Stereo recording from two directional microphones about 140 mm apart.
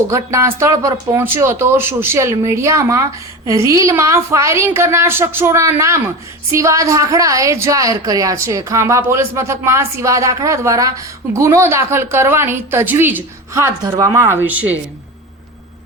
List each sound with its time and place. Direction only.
0.1 s a woman's voice: 20° right (ahead or behind)